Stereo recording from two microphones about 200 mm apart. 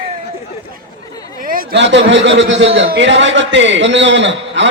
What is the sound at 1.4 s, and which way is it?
A man's voice, 45° right (ahead or behind).